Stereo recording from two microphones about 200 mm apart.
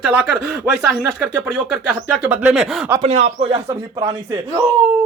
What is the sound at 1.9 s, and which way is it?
A man's voice, 5° right (ahead or behind).